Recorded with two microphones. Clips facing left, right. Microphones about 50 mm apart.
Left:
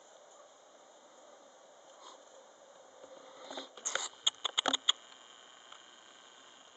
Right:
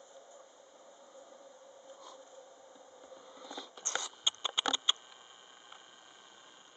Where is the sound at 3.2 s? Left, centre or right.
Centre.